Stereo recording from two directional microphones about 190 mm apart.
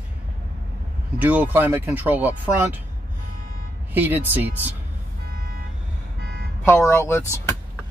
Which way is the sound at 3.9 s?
10° right (ahead or behind).